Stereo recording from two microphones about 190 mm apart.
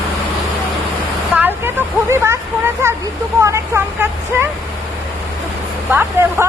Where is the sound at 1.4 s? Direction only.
10° right (ahead or behind).